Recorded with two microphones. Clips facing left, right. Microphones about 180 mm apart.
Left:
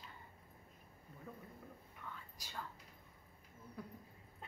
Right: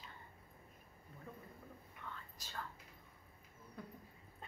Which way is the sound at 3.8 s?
5° left (ahead or behind).